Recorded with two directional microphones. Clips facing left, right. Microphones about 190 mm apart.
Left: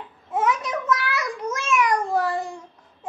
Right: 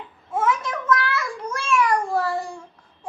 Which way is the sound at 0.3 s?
20° left (ahead or behind).